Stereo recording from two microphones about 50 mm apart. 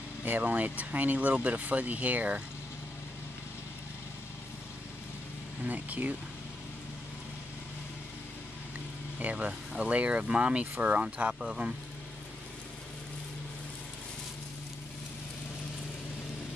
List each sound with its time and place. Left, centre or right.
0.2 s speech: right
5.7 s speech: right
9.2 s speech: right